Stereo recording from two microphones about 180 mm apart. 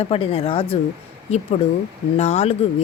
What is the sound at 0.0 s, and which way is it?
Speech, 30° left (ahead or behind).